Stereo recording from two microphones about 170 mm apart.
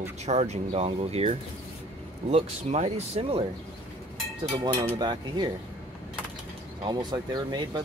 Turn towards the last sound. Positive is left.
turn(degrees=-25)  # may be behind; listen again after turning